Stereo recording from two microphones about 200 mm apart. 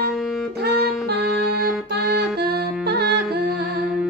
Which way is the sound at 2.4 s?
50° right (ahead or behind).